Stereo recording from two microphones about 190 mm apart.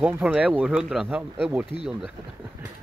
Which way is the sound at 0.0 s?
5° right (ahead or behind).